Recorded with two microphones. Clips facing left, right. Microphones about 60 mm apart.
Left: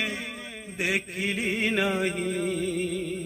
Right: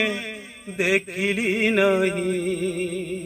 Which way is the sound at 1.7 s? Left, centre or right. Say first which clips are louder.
Right 8 dB; right.